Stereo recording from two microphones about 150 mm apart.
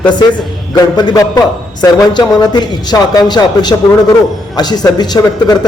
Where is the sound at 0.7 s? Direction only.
25° left (ahead or behind).